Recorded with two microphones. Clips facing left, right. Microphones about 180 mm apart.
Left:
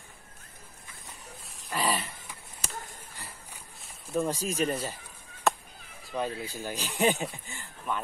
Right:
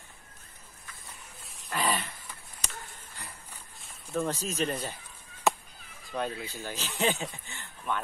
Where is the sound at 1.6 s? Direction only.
5° left (ahead or behind).